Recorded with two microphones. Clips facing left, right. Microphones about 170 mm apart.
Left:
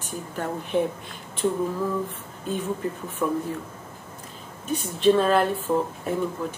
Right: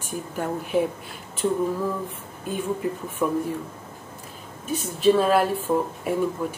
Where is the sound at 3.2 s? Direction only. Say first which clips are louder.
Right 1 dB; centre (ahead or behind).